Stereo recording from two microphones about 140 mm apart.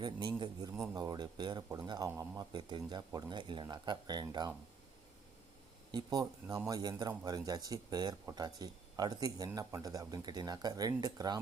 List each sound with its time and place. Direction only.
0.0 s speech: 35° right (ahead or behind)
5.9 s speech: 30° right (ahead or behind)